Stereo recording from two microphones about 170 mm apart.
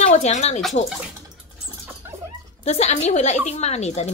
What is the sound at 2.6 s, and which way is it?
A woman's voice, 40° left (ahead or behind).